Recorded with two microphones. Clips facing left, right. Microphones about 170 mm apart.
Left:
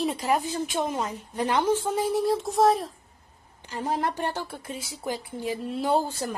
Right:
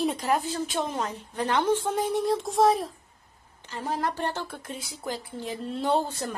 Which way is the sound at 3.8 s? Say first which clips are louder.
Left 2 dB; 20° left (ahead or behind).